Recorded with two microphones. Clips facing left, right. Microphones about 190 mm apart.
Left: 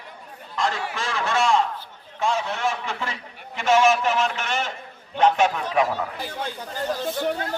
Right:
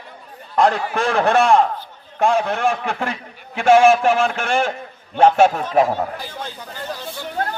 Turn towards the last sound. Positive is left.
turn(degrees=-55)  # may be behind; listen again after turning